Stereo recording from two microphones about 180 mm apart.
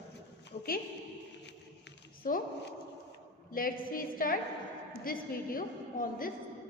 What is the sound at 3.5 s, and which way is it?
A woman's voice, 50° left (ahead or behind).